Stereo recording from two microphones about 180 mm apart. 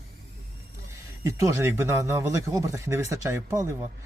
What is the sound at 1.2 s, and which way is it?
Speech, 15° right (ahead or behind).